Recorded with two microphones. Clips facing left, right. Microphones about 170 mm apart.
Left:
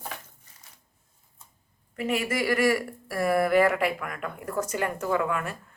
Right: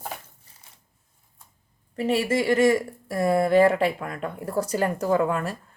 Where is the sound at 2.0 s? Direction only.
30° right (ahead or behind).